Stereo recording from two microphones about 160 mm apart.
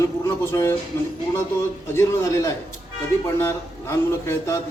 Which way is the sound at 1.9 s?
20° left (ahead or behind).